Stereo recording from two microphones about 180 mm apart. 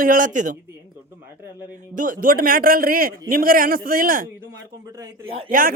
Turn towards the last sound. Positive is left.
turn(degrees=-50)  # may be behind; listen again after turning